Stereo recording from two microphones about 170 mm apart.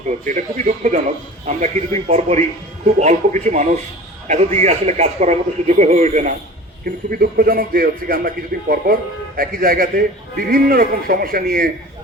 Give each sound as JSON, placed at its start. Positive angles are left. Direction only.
{"t": 0.3, "sound": "a man's voice", "side_deg": -50}
{"t": 6.8, "sound": "a man's voice", "side_deg": -60}